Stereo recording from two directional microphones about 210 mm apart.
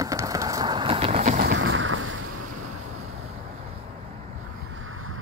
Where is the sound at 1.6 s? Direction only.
65° right (ahead or behind).